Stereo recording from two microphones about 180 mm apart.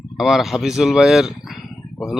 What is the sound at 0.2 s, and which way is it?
Speech, centre (ahead or behind).